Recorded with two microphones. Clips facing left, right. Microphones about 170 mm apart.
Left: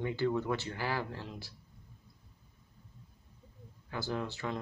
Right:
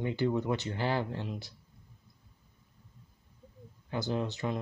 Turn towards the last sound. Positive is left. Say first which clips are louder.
# right 3 dB
turn(degrees=-20)  # may be behind; listen again after turning